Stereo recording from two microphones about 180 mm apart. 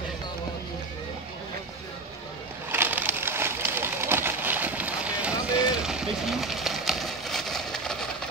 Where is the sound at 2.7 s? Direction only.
10° right (ahead or behind).